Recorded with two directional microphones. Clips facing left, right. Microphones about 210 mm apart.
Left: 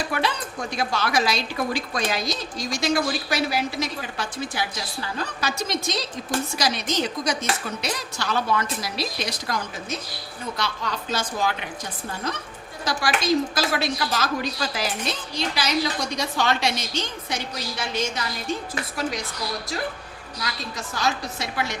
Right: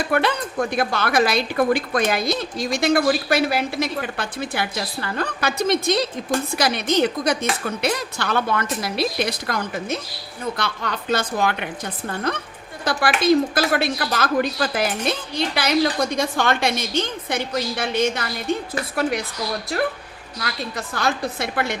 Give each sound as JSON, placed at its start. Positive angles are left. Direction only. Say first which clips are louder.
{"t": 0.0, "sound": "speech", "louder": "right 5 dB", "side_deg": -55}
{"t": 20.4, "sound": "speech", "louder": "right 4 dB", "side_deg": -55}